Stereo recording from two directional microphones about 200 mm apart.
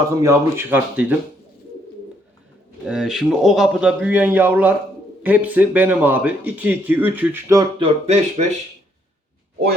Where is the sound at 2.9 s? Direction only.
5° right (ahead or behind).